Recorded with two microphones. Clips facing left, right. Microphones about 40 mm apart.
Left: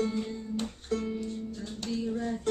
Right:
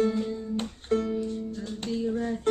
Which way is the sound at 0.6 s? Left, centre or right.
Right.